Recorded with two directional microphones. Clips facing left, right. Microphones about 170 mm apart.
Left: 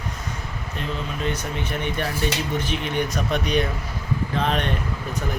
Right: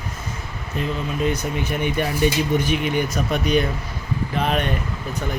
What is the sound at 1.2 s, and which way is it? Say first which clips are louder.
Speech: right 5 dB; 10° right (ahead or behind).